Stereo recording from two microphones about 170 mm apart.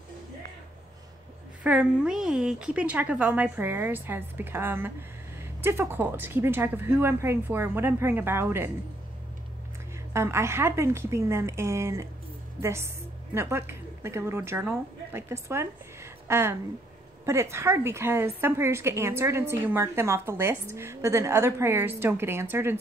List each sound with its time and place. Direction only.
1.6 s a woman's voice: 5° right (ahead or behind)
10.1 s a woman's voice: 15° right (ahead or behind)